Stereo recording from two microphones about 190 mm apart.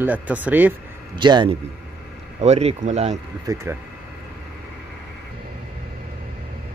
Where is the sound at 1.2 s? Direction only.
25° right (ahead or behind).